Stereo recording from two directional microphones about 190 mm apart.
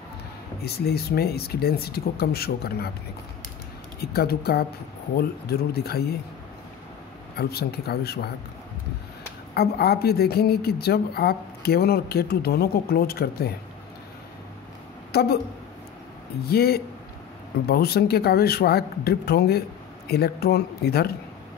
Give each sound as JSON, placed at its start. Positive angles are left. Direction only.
{"t": 0.7, "sound": "a woman's voice", "side_deg": 55}
{"t": 4.0, "sound": "a woman's voice", "side_deg": 55}
{"t": 7.3, "sound": "a woman's voice", "side_deg": 55}
{"t": 9.5, "sound": "a woman's voice", "side_deg": 55}
{"t": 15.1, "sound": "a woman's voice", "side_deg": 55}
{"t": 16.4, "sound": "a woman's voice", "side_deg": 55}